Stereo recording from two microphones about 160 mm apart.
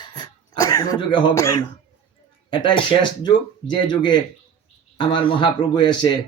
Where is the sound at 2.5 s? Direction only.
30° left (ahead or behind).